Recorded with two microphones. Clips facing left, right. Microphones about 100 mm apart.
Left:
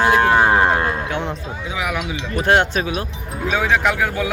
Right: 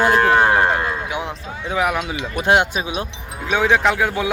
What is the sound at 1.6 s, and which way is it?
Speech, 40° right (ahead or behind).